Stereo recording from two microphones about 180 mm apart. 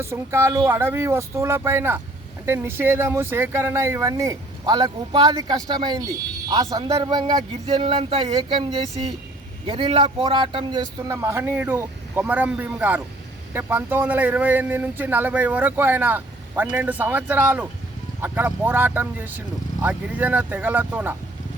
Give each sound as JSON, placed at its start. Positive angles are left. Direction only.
{"t": 0.0, "sound": "speech", "side_deg": -15}